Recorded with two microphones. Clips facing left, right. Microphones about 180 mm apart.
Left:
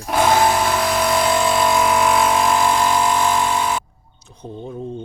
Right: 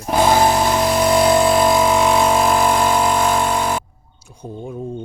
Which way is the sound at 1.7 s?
25° right (ahead or behind).